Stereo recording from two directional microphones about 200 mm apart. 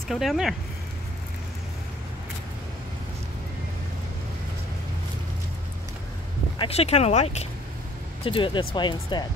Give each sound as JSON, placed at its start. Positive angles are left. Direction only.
{"t": 0.1, "sound": "speech", "side_deg": 0}
{"t": 6.6, "sound": "speech", "side_deg": 30}